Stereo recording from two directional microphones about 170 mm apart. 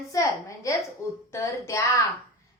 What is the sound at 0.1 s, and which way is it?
A woman's voice, 20° left (ahead or behind).